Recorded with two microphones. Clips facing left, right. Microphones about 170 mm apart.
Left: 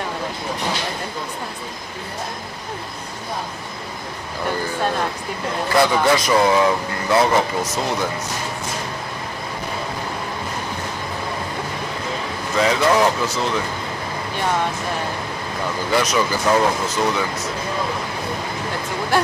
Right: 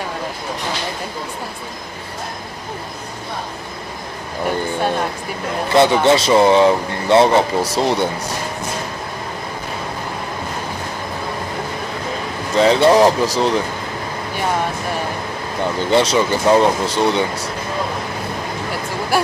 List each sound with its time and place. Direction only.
5.7 s speech: 25° right (ahead or behind)
12.5 s speech: 30° right (ahead or behind)
15.9 s speech: 25° right (ahead or behind)